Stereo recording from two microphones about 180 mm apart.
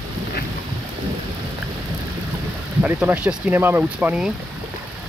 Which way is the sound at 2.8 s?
10° right (ahead or behind).